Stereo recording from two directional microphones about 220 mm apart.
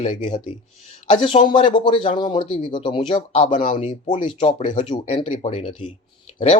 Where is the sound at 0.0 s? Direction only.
25° left (ahead or behind).